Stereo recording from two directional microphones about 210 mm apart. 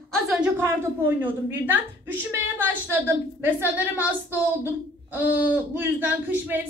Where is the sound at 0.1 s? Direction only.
Centre (ahead or behind).